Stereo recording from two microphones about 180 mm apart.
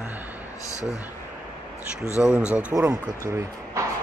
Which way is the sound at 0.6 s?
15° left (ahead or behind).